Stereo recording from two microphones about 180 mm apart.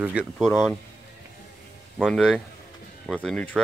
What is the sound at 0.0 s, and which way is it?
Speech, 5° right (ahead or behind).